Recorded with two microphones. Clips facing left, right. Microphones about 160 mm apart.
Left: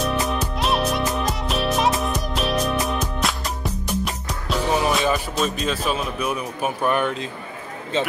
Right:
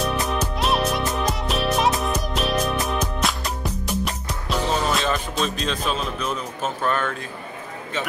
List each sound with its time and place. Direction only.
0.0 s music: centre (ahead or behind)
4.6 s music: 15° left (ahead or behind)
5.0 s speech: 5° left (ahead or behind)
7.9 s speech: 30° left (ahead or behind)